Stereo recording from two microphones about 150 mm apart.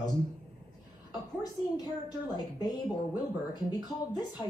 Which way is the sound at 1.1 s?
25° left (ahead or behind).